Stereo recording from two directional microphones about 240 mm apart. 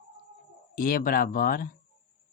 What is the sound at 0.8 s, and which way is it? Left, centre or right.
Speech, left.